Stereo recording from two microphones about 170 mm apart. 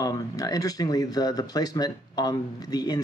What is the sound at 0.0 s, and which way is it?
Speech, 20° left (ahead or behind).